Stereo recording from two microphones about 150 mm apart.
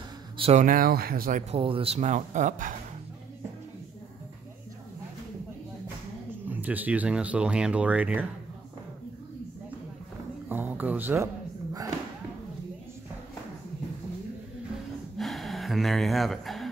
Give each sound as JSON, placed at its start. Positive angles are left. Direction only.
{"t": 0.4, "sound": "speech", "side_deg": -45}
{"t": 0.7, "sound": "speech", "side_deg": -75}
{"t": 1.5, "sound": "speech", "side_deg": -40}
{"t": 2.0, "sound": "speech", "side_deg": -55}
{"t": 6.4, "sound": "speech", "side_deg": -10}
{"t": 10.5, "sound": "speech", "side_deg": -10}
{"t": 15.1, "sound": "gasp", "side_deg": 0}